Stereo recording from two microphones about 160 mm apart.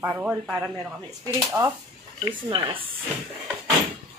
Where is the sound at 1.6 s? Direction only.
15° right (ahead or behind).